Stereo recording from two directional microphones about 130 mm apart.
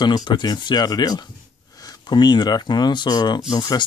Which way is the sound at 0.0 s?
35° left (ahead or behind).